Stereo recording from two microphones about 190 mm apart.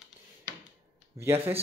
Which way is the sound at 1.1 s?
15° right (ahead or behind).